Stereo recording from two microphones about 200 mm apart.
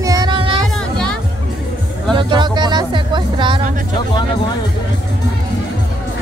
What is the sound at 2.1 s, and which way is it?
Music, 25° right (ahead or behind).